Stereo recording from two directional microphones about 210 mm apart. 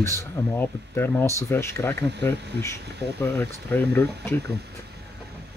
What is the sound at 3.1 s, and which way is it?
Speech, 10° left (ahead or behind).